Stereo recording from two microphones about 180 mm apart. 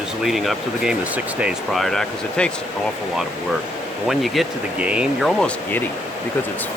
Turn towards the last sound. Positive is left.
turn(degrees=10)  # may be behind; listen again after turning